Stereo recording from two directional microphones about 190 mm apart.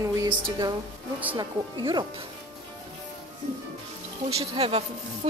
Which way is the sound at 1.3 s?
25° right (ahead or behind).